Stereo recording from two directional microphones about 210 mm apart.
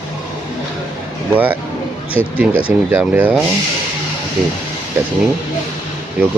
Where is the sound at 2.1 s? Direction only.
10° right (ahead or behind).